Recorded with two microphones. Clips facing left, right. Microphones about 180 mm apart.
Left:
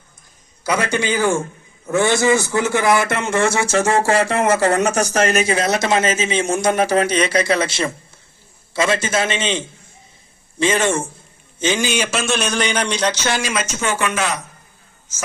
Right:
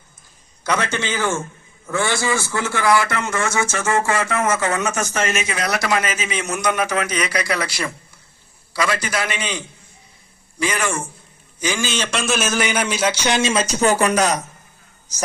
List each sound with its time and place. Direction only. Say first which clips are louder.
0.6 s a man's voice: left 3 dB; 10° left (ahead or behind); by 15.2 s 35° right (ahead or behind)